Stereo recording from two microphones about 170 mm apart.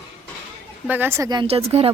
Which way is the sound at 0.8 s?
10° right (ahead or behind).